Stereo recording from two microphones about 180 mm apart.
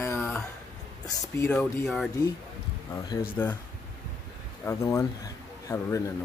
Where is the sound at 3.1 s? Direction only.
20° left (ahead or behind).